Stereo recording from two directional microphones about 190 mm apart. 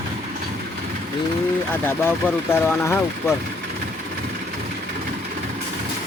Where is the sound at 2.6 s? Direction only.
15° left (ahead or behind).